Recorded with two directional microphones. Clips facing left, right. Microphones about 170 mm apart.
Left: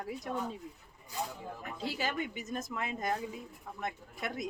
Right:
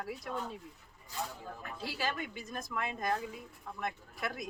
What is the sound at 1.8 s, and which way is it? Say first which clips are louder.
Speech: left 2 dB; 20° left (ahead or behind).